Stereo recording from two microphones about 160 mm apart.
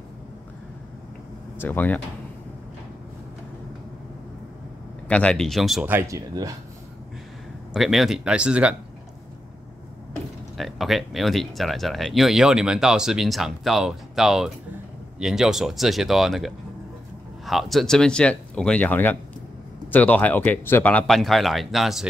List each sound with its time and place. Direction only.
1.6 s speech: 10° left (ahead or behind)
5.0 s speech: 10° left (ahead or behind)
5.9 s speech: 15° right (ahead or behind)
7.7 s speech: centre (ahead or behind)
10.6 s speech: centre (ahead or behind)